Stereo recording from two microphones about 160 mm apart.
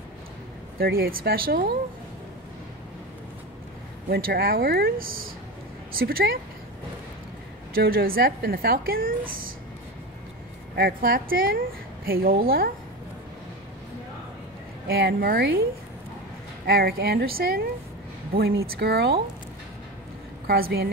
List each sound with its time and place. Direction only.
0.7 s a woman's voice: 70° right (ahead or behind)
4.1 s a woman's voice: 70° right (ahead or behind)
7.7 s a woman's voice: 70° right (ahead or behind)
10.8 s a woman's voice: 70° right (ahead or behind)
14.9 s a woman's voice: 75° right (ahead or behind)
16.6 s speech: 80° right
18.7 s speech: 90° right
20.4 s a woman's voice: 75° right (ahead or behind)